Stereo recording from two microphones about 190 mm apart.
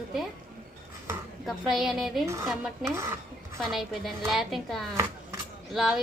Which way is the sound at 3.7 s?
Centre (ahead or behind).